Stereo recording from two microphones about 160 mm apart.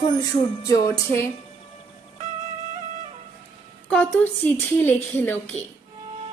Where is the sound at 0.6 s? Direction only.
20° left (ahead or behind).